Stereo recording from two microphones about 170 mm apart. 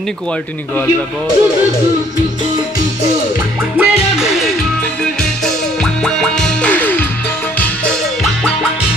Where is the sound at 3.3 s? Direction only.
15° right (ahead or behind).